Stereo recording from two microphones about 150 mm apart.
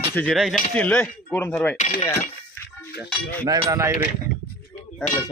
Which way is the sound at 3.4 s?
25° right (ahead or behind).